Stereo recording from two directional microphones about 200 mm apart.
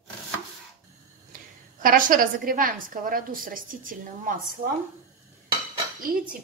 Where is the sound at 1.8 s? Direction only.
40° right (ahead or behind).